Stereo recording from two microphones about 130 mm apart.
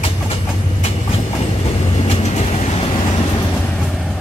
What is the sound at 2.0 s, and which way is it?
Train, 55° left (ahead or behind).